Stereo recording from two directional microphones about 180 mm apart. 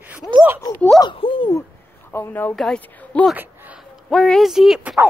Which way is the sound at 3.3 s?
10° right (ahead or behind).